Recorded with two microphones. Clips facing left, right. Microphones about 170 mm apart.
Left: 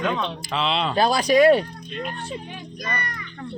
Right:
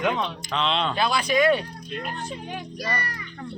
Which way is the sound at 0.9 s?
40° left (ahead or behind).